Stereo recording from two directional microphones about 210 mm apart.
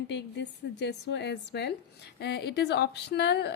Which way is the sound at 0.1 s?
55° left (ahead or behind).